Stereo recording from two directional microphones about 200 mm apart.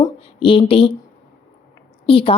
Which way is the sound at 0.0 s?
25° left (ahead or behind).